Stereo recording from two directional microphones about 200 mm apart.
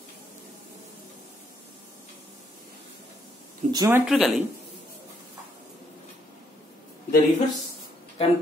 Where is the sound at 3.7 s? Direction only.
15° right (ahead or behind).